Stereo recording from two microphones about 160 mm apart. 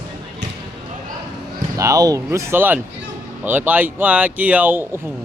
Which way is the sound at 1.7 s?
20° right (ahead or behind).